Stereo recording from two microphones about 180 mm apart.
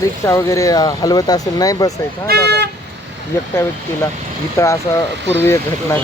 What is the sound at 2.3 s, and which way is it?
Speech, 60° right (ahead or behind).